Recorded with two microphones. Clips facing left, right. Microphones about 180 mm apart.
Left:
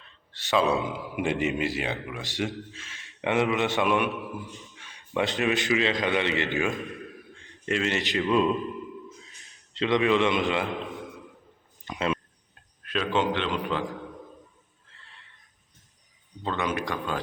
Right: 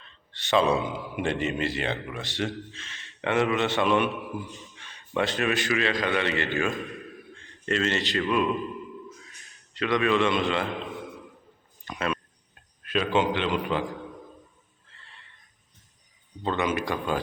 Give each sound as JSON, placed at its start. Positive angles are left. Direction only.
{"t": 0.0, "sound": "a man's voice", "side_deg": 5}
{"t": 1.2, "sound": "a man's voice", "side_deg": 15}
{"t": 1.7, "sound": "a man's voice", "side_deg": 5}
{"t": 2.3, "sound": "a man's voice", "side_deg": 15}
{"t": 2.6, "sound": "a man's voice", "side_deg": 5}
{"t": 3.2, "sound": "a man's voice", "side_deg": 15}
{"t": 6.7, "sound": "a man's voice", "side_deg": 0}
{"t": 7.3, "sound": "a man's voice", "side_deg": 15}
{"t": 11.9, "sound": "a sound", "side_deg": 20}
{"t": 12.8, "sound": "a man's voice", "side_deg": -5}
{"t": 14.9, "sound": "a sound", "side_deg": 0}
{"t": 16.4, "sound": "a man's voice", "side_deg": 0}